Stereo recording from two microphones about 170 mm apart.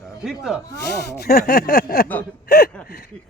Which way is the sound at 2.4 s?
70° left (ahead or behind).